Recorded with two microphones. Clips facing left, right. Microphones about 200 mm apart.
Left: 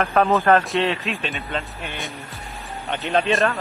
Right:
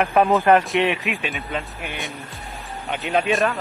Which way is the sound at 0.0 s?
15° right (ahead or behind).